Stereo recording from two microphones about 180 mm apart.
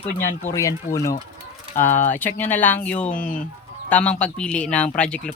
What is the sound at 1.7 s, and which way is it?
Speech, 10° left (ahead or behind).